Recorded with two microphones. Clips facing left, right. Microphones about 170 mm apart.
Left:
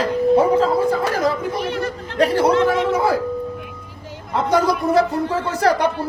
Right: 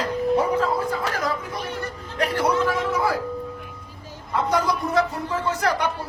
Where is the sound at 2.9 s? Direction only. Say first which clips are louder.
Left 5 dB; 25° left (ahead or behind).